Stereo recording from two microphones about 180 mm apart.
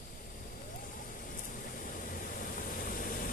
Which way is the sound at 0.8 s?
50° left (ahead or behind).